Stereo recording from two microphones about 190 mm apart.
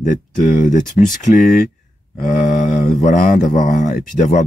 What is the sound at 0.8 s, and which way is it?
Speech, centre (ahead or behind).